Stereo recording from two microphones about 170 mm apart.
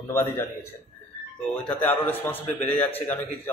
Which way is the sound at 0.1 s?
15° left (ahead or behind).